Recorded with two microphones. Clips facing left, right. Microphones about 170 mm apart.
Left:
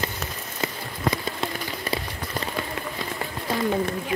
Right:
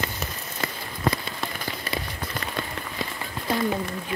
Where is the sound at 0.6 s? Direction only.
20° left (ahead or behind).